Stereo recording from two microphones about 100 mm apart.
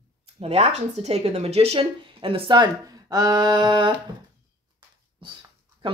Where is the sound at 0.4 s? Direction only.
90° right; by 2.7 s 55° right (ahead or behind).